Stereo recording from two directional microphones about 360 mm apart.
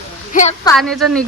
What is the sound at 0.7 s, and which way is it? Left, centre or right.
Speech, centre.